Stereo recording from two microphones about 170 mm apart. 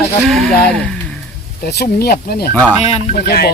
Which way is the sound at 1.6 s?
70° left (ahead or behind).